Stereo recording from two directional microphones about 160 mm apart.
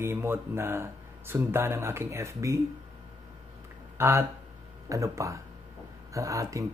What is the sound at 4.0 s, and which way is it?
Speech, 15° right (ahead or behind).